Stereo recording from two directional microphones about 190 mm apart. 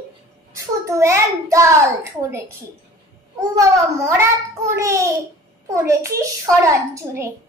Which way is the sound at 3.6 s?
15° right (ahead or behind).